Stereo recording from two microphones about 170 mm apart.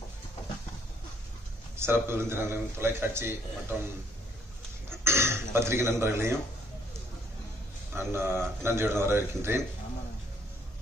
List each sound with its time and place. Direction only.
1.8 s a man's voice: 15° right (ahead or behind)
4.8 s throat clearing: 15° right (ahead or behind)
7.9 s a man's voice: 15° right (ahead or behind)